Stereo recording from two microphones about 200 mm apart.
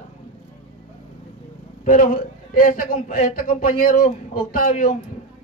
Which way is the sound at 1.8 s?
40° left (ahead or behind).